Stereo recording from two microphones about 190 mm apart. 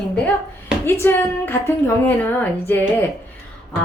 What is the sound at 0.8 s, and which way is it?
A woman's voice, 10° left (ahead or behind).